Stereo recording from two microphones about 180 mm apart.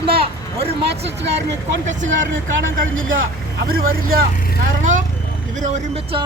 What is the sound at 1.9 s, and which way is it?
Speech, 90° right.